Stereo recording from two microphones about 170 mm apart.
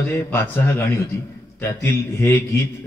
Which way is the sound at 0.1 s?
15° left (ahead or behind).